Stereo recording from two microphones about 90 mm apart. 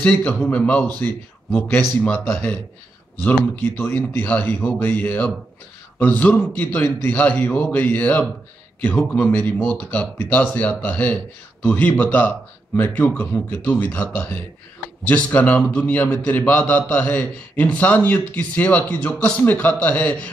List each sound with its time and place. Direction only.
0.0 s a man's voice: 15° left (ahead or behind)